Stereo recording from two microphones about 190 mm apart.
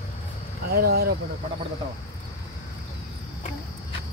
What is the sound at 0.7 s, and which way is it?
Speech, 55° right (ahead or behind).